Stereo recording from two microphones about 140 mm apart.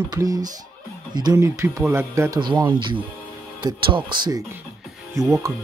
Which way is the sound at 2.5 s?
35° right (ahead or behind).